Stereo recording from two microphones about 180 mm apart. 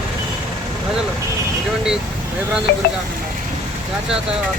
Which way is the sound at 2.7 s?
60° left (ahead or behind).